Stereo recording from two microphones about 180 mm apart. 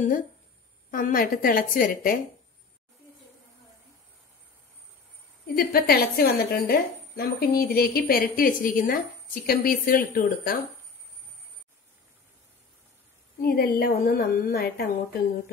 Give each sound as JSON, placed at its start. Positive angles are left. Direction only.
{"t": 0.9, "sound": "a woman's voice", "side_deg": 50}
{"t": 5.6, "sound": "a woman's voice", "side_deg": 55}
{"t": 13.4, "sound": "a woman's voice", "side_deg": 60}